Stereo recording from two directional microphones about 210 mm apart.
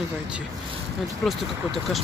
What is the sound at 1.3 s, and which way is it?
Speech, centre (ahead or behind).